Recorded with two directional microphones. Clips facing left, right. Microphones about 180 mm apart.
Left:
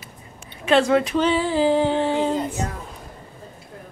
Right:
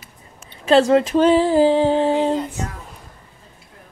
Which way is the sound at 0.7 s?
35° right (ahead or behind).